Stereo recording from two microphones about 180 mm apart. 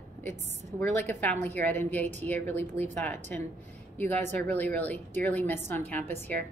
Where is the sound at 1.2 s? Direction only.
10° left (ahead or behind).